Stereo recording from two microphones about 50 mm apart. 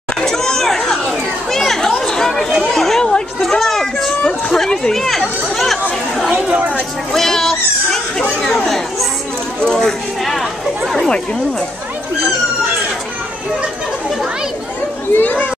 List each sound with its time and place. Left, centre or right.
0.2 s a sound: centre
4.9 s chatter: centre
7.1 s children playing: centre
8.2 s chatter: centre
9.7 s chatter: centre
15.1 s speech: left